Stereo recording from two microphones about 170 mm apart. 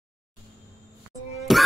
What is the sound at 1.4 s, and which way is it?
Music, centre (ahead or behind).